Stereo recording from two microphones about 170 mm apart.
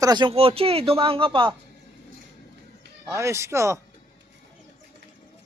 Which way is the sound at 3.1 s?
15° right (ahead or behind).